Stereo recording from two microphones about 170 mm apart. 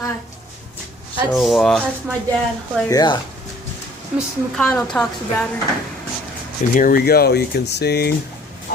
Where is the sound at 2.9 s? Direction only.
25° left (ahead or behind).